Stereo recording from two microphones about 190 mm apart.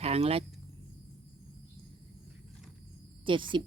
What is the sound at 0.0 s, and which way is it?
Speech, 35° right (ahead or behind).